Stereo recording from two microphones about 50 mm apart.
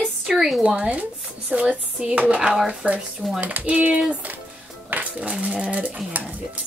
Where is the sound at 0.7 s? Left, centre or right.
Right.